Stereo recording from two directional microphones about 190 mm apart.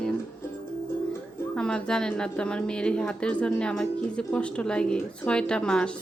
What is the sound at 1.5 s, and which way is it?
A woman's voice, 5° left (ahead or behind).